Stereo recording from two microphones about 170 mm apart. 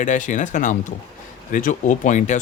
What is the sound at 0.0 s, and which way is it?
Speech, 50° left (ahead or behind).